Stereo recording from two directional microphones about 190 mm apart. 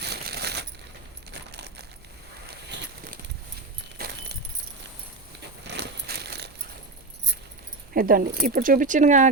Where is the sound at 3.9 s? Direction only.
55° right (ahead or behind).